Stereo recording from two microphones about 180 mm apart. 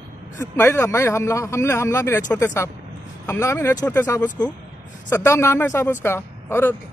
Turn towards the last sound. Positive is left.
turn(degrees=15)  # may be behind; listen again after turning